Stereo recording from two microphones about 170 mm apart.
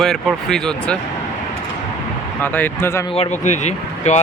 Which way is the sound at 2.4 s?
10° left (ahead or behind).